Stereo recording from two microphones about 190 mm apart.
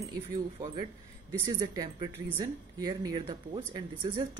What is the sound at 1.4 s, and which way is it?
Speech, 20° right (ahead or behind).